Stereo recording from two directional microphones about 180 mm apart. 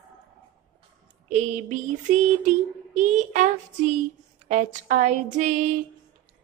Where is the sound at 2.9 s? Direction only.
40° right (ahead or behind).